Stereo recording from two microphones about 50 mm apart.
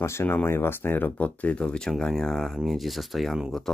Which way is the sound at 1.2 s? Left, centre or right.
Left.